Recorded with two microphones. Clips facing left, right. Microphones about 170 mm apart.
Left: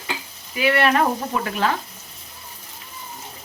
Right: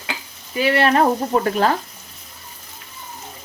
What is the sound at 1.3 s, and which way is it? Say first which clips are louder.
Stir: right 5 dB; 40° right (ahead or behind).